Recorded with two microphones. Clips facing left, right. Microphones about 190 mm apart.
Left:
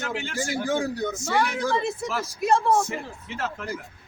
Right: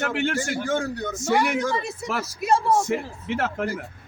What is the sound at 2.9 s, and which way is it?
Speech, 60° right (ahead or behind).